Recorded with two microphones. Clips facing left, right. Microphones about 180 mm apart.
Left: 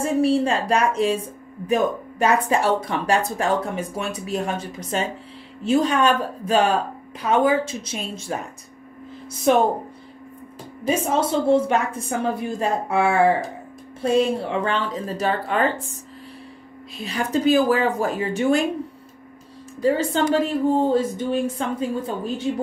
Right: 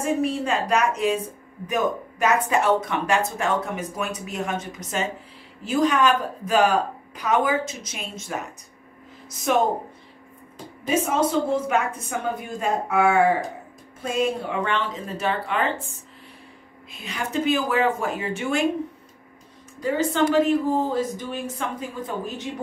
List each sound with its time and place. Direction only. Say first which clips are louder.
0.0 s a woman's voice: left 5 dB; 30° left (ahead or behind)
11.1 s a woman's voice: left 7 dB; 30° left (ahead or behind)
17.0 s speech: left 4 dB; 35° left (ahead or behind)
19.8 s a woman's voice: left 2 dB; 30° left (ahead or behind)